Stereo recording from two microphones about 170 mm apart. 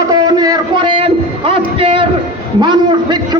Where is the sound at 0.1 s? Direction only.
25° right (ahead or behind).